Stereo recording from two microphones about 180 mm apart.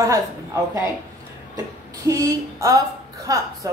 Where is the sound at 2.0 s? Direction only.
20° right (ahead or behind).